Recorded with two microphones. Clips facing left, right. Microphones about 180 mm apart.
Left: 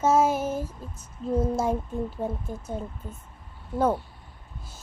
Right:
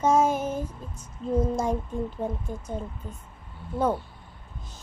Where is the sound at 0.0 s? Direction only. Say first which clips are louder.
Even; 5° left (ahead or behind).